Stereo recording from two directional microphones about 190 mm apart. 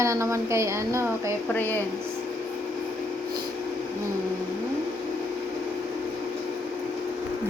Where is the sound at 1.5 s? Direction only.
10° left (ahead or behind).